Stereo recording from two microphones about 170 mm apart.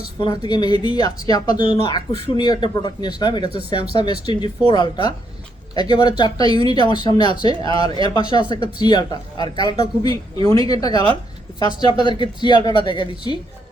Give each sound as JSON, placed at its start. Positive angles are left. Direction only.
{"t": 0.2, "sound": "speech", "side_deg": 25}
{"t": 10.0, "sound": "a woman's voice", "side_deg": -30}
{"t": 10.4, "sound": "speech", "side_deg": 20}